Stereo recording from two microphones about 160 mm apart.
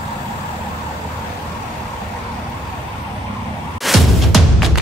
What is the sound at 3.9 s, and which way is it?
Music, centre (ahead or behind).